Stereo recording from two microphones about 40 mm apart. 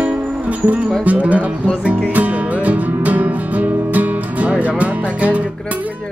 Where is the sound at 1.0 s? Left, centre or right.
Right.